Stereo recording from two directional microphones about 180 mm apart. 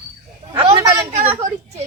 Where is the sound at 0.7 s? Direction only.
20° right (ahead or behind).